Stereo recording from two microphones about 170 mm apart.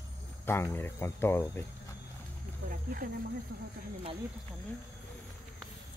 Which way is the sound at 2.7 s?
55° right (ahead or behind).